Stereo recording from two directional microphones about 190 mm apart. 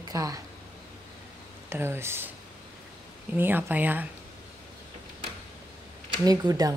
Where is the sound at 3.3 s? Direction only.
10° right (ahead or behind).